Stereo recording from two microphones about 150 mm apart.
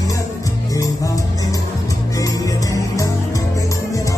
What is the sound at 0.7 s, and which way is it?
Music, 20° left (ahead or behind).